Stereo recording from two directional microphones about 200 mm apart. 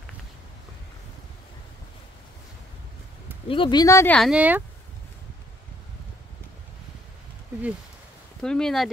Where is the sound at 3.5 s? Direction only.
25° left (ahead or behind).